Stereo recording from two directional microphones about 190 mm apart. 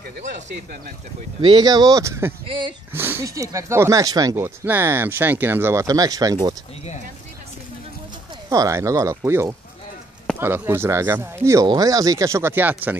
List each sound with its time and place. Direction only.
1.4 s speech: 25° right (ahead or behind)
2.4 s speech: 25° right (ahead or behind)
2.9 s speech: 10° right (ahead or behind)
8.5 s speech: 15° right (ahead or behind)